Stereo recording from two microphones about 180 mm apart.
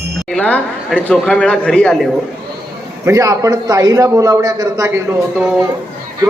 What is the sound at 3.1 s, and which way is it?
A man's voice, 15° right (ahead or behind).